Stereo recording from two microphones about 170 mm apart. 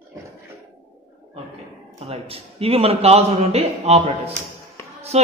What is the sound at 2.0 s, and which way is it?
Speech, 35° right (ahead or behind).